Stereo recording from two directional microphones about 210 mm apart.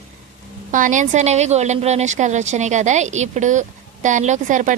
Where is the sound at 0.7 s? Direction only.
35° right (ahead or behind).